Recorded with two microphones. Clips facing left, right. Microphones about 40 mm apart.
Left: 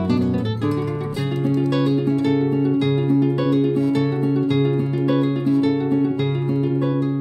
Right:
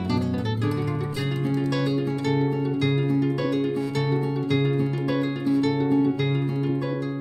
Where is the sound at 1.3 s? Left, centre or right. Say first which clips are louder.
Left 6 dB; centre.